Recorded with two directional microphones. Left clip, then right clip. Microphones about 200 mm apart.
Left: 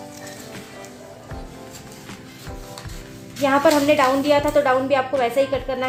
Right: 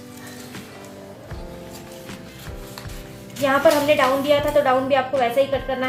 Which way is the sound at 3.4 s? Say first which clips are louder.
Even; 35° left (ahead or behind).